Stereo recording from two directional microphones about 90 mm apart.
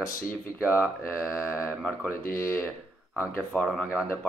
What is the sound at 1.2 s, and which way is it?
Speech, 5° right (ahead or behind).